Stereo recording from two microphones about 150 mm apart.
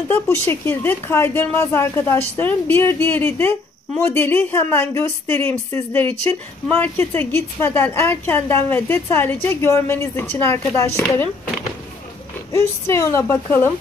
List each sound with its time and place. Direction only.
0.1 s a woman's voice: 15° left (ahead or behind)
12.5 s a woman's voice: 15° left (ahead or behind)